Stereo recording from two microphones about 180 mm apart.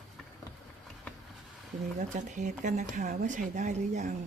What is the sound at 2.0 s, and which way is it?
Speech, 45° right (ahead or behind).